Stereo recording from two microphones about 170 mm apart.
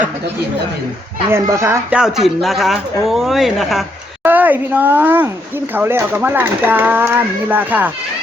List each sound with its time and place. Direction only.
1.3 s speech: 15° right (ahead or behind)
2.0 s speech: 5° right (ahead or behind)